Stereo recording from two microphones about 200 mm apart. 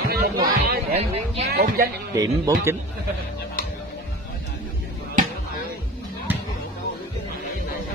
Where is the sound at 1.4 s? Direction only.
50° right (ahead or behind).